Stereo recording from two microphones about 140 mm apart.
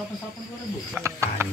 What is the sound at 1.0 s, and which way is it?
Frog, 20° right (ahead or behind).